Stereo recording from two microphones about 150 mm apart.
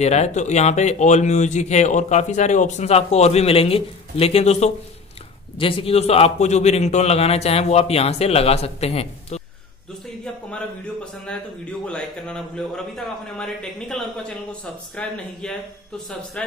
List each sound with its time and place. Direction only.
0.0 s speech: 45° left (ahead or behind)
11.8 s a man's voice: 5° left (ahead or behind)